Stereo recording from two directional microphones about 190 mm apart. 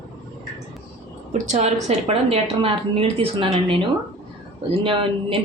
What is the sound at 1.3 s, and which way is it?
Speech, 35° right (ahead or behind).